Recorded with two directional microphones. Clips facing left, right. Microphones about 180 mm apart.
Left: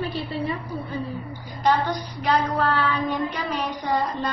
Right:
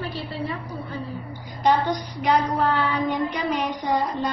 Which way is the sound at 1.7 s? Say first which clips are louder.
Right 1 dB; 15° right (ahead or behind).